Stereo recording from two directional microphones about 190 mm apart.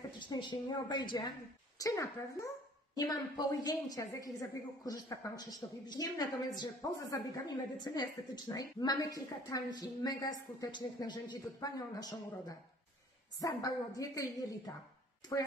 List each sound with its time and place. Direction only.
0.3 s a woman's voice: 20° left (ahead or behind)